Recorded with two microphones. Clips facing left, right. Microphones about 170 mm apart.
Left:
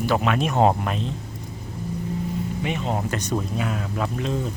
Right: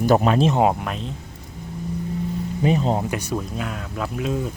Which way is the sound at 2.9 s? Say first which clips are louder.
Right 1 dB; 10° right (ahead or behind).